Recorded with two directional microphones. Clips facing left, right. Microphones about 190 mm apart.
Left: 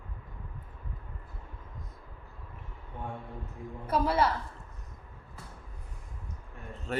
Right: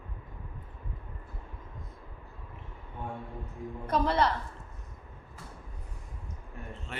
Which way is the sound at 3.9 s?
5° left (ahead or behind).